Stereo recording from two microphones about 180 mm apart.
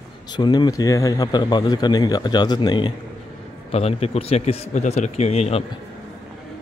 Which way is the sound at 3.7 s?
35° left (ahead or behind).